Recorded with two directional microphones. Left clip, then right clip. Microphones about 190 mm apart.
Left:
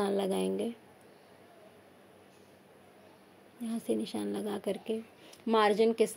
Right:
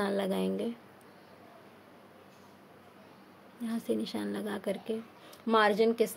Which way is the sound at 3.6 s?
20° left (ahead or behind).